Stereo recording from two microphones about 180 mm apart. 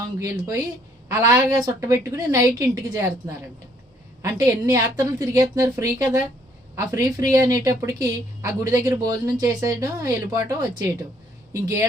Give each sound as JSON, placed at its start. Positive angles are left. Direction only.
{"t": 0.2, "sound": "a woman's voice", "side_deg": -20}